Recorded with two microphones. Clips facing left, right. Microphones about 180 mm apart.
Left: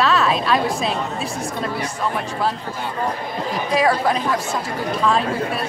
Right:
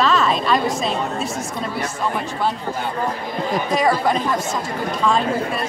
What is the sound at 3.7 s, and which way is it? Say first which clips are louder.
Speech: left 1 dB; centre (ahead or behind).